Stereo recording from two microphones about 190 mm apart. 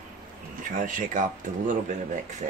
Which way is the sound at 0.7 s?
45° right (ahead or behind).